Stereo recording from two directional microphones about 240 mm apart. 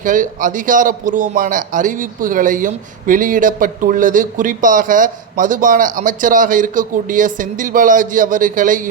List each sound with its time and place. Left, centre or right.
0.0 s a man's voice: right